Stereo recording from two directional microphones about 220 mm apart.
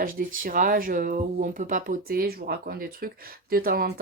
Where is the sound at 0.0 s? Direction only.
40° right (ahead or behind).